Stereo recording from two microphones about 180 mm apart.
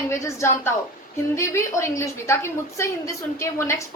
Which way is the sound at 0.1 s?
15° left (ahead or behind).